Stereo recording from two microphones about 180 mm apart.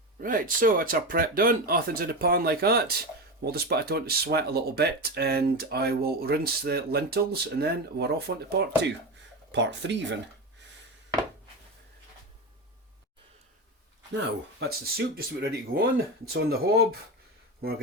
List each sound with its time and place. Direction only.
0.2 s speech: 50° right (ahead or behind)
9.5 s speech: 75° right (ahead or behind)
14.1 s speech: 70° right (ahead or behind)